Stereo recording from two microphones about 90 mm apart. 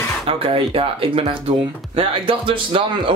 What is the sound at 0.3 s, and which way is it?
Speech, 90° right.